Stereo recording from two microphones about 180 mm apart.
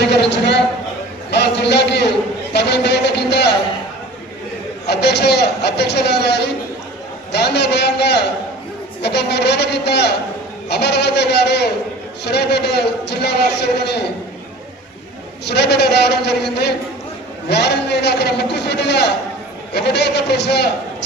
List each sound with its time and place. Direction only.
0.1 s a sound: 70° left (ahead or behind)
1.3 s a man's voice: 70° left (ahead or behind)
4.9 s a man's voice: 65° left (ahead or behind)
15.4 s a man's voice: 65° left (ahead or behind)